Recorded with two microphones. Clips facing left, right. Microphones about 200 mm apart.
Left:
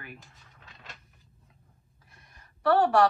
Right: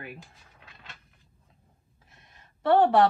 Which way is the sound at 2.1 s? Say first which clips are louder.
Even; 25° right (ahead or behind).